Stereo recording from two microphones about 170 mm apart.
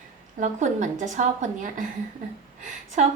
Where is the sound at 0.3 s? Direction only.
45° right (ahead or behind).